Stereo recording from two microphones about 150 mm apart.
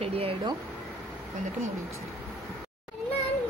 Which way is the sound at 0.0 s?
40° right (ahead or behind).